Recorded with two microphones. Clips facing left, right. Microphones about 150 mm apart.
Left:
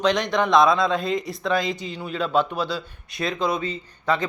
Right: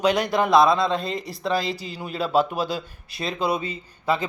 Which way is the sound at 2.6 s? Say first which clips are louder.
Even; 45° right (ahead or behind).